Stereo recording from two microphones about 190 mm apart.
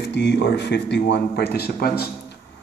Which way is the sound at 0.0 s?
65° left (ahead or behind).